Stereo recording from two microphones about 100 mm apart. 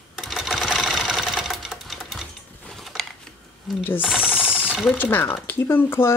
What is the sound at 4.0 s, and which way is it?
Sewing machine, 10° right (ahead or behind).